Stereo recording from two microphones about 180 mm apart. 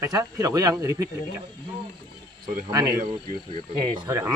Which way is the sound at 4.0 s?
20° right (ahead or behind).